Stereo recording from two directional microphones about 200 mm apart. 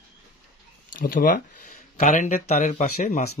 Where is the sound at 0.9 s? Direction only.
45° left (ahead or behind).